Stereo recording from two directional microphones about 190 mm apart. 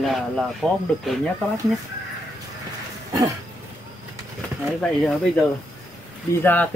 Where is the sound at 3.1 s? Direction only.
20° right (ahead or behind).